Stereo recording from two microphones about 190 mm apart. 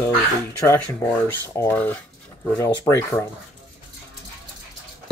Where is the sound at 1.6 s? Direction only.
10° left (ahead or behind).